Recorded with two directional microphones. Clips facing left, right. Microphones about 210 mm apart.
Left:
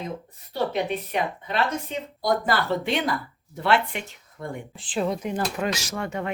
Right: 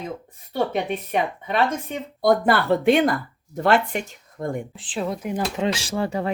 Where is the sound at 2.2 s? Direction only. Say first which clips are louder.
Right 6 dB; 55° right (ahead or behind).